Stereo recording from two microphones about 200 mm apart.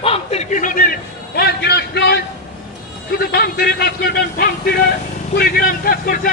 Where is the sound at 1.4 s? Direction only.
55° left (ahead or behind).